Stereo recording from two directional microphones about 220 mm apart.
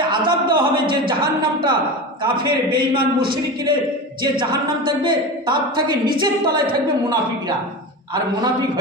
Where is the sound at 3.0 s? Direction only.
40° right (ahead or behind).